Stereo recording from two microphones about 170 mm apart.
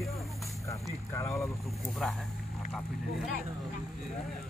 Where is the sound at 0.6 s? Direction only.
15° left (ahead or behind).